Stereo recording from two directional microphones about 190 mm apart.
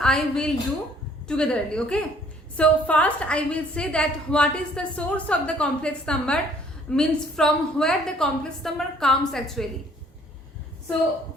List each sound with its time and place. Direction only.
0.0 s a woman's voice: 5° left (ahead or behind)